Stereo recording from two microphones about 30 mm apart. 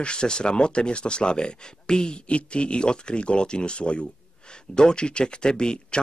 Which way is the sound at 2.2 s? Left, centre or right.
Left.